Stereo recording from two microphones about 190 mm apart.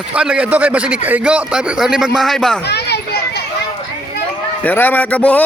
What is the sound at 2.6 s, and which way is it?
Children playing, 60° left (ahead or behind).